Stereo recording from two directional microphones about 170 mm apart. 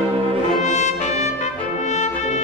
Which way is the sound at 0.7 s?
45° left (ahead or behind).